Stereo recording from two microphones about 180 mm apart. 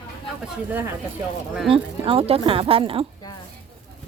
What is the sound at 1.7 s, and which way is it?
Speech, 30° right (ahead or behind).